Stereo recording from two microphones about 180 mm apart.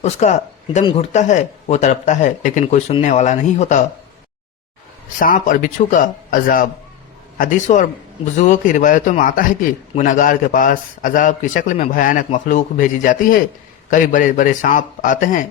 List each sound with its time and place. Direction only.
0.0 s speech: 40° left (ahead or behind)
5.2 s a man's voice: 50° left (ahead or behind)